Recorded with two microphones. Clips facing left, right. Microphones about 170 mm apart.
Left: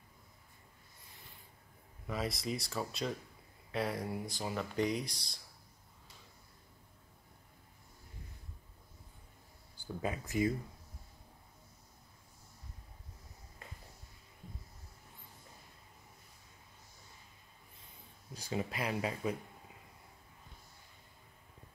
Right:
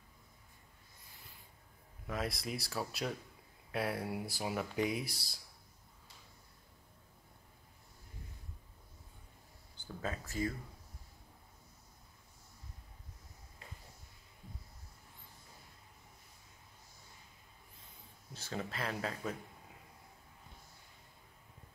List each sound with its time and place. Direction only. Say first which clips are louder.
2.0 s speech: left 2 dB; centre (ahead or behind)
9.8 s speech: left 3 dB; 15° left (ahead or behind)
13.6 s a sound: left 1 dB; 50° left (ahead or behind)
18.5 s speech: left 3 dB; 10° left (ahead or behind)